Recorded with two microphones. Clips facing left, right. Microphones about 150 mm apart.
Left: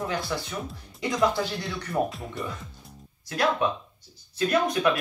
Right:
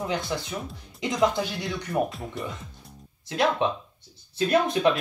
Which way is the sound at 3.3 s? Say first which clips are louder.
Right 1 dB; 25° right (ahead or behind).